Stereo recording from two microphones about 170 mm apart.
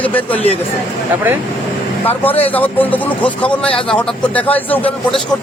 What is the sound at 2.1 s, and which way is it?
A man's voice, 10° left (ahead or behind).